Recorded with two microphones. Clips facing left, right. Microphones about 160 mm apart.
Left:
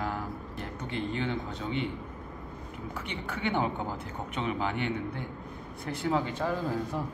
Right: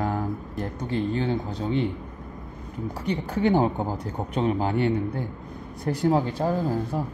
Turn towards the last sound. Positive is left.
turn(degrees=-35)  # may be behind; listen again after turning